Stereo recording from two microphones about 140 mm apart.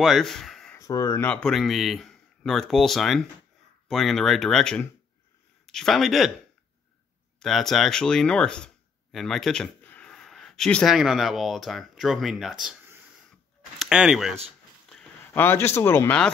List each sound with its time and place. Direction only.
0.0 s speech: centre (ahead or behind)
0.7 s speech: 20° left (ahead or behind)
1.2 s speech: 5° left (ahead or behind)
7.3 s speech: centre (ahead or behind)
13.7 s speech: 5° right (ahead or behind)
14.9 s a sound: 5° left (ahead or behind)
15.4 s speech: 20° left (ahead or behind)